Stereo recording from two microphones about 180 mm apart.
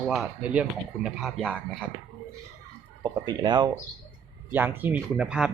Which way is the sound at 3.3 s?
25° right (ahead or behind).